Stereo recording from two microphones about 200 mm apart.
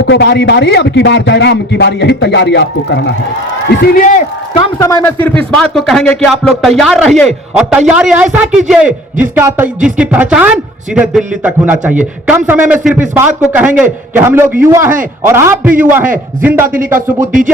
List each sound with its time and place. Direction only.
0.0 s a man's voice: 60° left (ahead or behind); by 4.2 s 45° left (ahead or behind)
4.8 s a man's voice: 15° left (ahead or behind); by 16.6 s 5° right (ahead or behind)
17.2 s speech: 40° right (ahead or behind)